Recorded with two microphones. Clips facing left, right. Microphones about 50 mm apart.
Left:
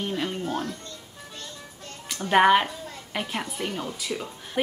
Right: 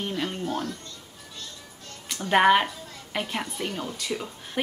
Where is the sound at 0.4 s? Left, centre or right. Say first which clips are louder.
Even; centre.